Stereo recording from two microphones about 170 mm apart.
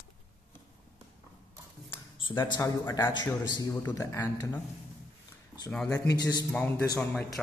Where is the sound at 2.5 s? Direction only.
20° left (ahead or behind).